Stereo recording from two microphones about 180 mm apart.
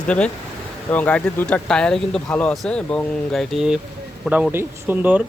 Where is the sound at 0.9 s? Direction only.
10° left (ahead or behind).